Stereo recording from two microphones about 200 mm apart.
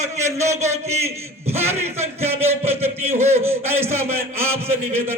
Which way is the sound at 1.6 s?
10° right (ahead or behind).